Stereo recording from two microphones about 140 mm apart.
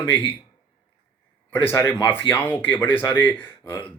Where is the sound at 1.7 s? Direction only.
15° left (ahead or behind).